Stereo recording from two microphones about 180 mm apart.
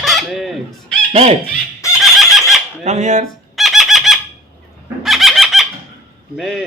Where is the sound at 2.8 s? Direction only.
40° right (ahead or behind).